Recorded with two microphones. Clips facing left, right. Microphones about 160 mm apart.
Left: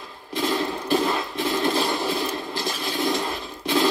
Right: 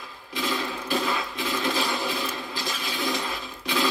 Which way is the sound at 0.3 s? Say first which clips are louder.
Left 5 dB; 45° left (ahead or behind).